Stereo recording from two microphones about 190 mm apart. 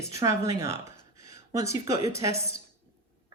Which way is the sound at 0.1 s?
15° right (ahead or behind).